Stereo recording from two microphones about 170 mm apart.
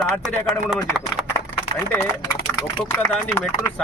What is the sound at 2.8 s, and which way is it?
Speech, 5° left (ahead or behind).